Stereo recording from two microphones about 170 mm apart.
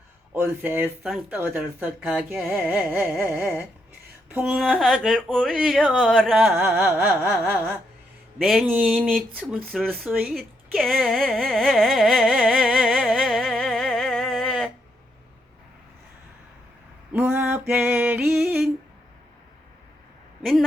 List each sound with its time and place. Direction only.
0.3 s speech: 10° right (ahead or behind)
4.3 s a sound: 5° right (ahead or behind)
4.5 s speech: 5° left (ahead or behind)
6.7 s speech: 10° right (ahead or behind)
9.3 s speech: 10° right (ahead or behind)
12.6 s music: centre (ahead or behind)
17.1 s a sound: 10° right (ahead or behind)
20.4 s speech: centre (ahead or behind)